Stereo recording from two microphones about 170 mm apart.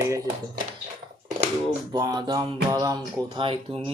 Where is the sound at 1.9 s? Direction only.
20° right (ahead or behind).